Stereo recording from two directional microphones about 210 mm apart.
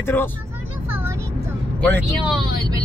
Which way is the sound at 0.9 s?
10° right (ahead or behind).